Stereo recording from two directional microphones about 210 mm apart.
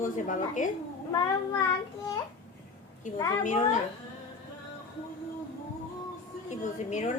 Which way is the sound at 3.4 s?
35° left (ahead or behind).